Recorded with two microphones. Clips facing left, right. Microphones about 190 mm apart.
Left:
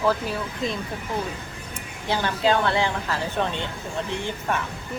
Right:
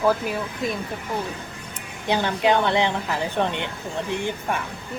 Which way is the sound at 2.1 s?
20° right (ahead or behind).